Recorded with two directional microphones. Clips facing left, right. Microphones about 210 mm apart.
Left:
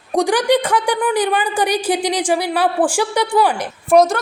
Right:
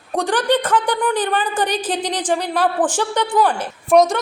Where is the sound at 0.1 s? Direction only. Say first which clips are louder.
Left 3 dB; 15° left (ahead or behind).